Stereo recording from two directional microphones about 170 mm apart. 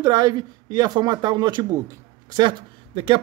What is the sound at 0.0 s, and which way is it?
Speech, 25° right (ahead or behind).